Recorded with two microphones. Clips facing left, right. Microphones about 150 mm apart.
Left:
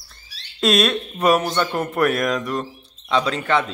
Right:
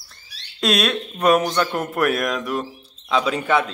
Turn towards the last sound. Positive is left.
turn(degrees=-10)  # may be behind; listen again after turning